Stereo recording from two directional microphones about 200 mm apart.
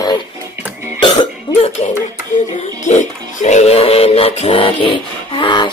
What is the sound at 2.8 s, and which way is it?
Music, 35° left (ahead or behind).